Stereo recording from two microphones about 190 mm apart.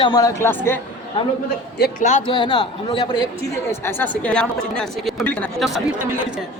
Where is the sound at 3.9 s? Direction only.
10° left (ahead or behind).